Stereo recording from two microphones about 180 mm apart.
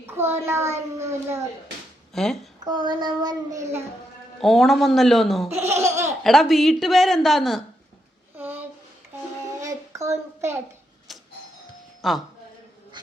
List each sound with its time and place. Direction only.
0.0 s a child's voice: 15° right (ahead or behind)
2.1 s speech: centre (ahead or behind)
2.6 s a child's voice: 25° right (ahead or behind)
4.4 s speech: centre (ahead or behind)
5.5 s a child's voice: 15° right (ahead or behind)
6.2 s speech: centre (ahead or behind)
8.4 s a sound: 10° right (ahead or behind)
11.1 s doorbell: centre (ahead or behind)
12.0 s speech: centre (ahead or behind)